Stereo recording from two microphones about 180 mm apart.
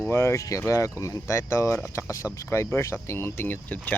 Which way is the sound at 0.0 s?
15° left (ahead or behind).